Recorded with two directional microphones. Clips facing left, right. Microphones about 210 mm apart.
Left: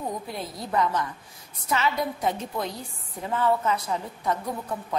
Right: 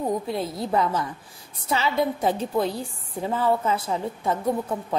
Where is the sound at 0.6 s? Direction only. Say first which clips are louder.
Even; 30° right (ahead or behind).